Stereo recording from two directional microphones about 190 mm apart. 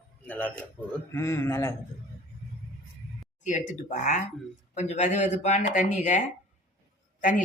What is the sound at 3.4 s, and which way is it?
Speech, 40° left (ahead or behind).